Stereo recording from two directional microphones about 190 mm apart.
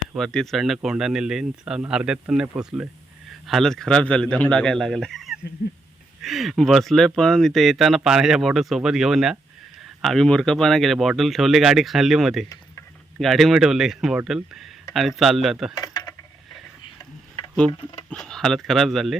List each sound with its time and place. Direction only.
0.1 s speech: 5° left (ahead or behind)
15.7 s coin: 20° left (ahead or behind)
18.1 s speech: 5° left (ahead or behind)